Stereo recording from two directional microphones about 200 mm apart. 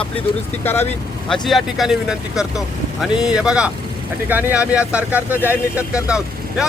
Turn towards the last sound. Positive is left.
turn(degrees=-5)  # may be behind; listen again after turning